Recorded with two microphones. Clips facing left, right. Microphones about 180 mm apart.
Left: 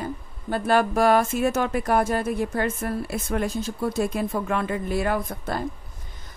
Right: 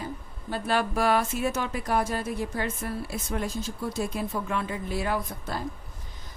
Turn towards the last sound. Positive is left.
turn(degrees=55)  # may be behind; listen again after turning